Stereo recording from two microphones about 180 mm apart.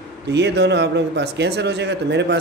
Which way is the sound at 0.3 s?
70° right (ahead or behind).